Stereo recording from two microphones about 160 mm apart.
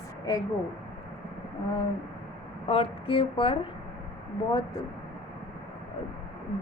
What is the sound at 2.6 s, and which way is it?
Speech, 35° left (ahead or behind).